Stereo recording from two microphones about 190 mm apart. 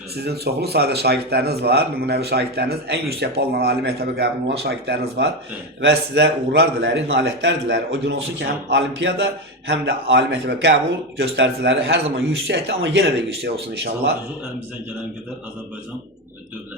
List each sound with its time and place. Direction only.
0.2 s a man's voice: 60° right (ahead or behind)